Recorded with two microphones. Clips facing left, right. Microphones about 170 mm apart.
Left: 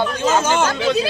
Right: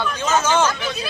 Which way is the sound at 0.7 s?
90° left.